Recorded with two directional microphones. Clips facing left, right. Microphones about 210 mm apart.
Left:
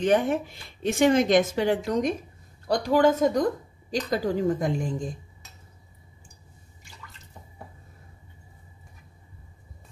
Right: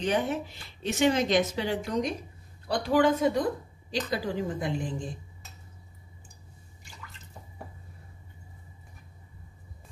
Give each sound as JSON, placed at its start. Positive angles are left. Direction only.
{"t": 0.0, "sound": "a woman's voice", "side_deg": 50}